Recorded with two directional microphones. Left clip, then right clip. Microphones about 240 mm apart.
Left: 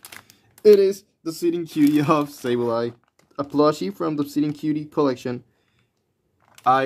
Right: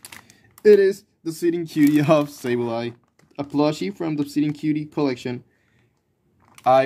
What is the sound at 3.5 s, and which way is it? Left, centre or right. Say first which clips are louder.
Speech: left 2 dB; left.